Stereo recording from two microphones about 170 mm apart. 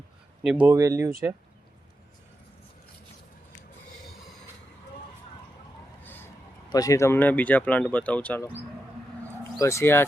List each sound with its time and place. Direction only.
0.4 s speech: 10° right (ahead or behind)
6.7 s speech: 20° left (ahead or behind)
9.6 s speech: 15° left (ahead or behind)